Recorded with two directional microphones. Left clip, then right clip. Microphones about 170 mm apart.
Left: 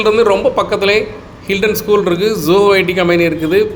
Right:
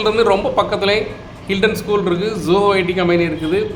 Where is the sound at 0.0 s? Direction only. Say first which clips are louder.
Left 4 dB; 10° left (ahead or behind).